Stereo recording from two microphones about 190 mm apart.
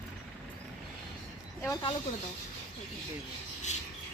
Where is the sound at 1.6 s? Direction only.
20° left (ahead or behind).